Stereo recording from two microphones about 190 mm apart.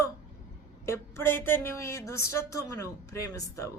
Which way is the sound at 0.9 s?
10° left (ahead or behind).